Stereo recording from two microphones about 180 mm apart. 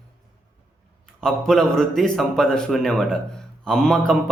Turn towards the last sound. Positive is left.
turn(degrees=5)  # may be behind; listen again after turning